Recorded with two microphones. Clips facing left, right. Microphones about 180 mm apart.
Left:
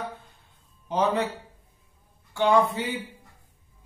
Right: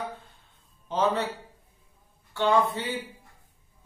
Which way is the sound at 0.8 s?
10° left (ahead or behind).